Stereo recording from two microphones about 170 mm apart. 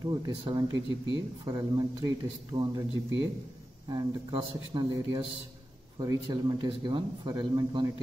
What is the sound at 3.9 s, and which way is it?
A man's voice, 25° right (ahead or behind).